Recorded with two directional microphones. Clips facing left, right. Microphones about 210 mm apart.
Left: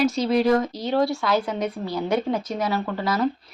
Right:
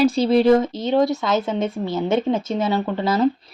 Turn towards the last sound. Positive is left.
turn(degrees=-25)  # may be behind; listen again after turning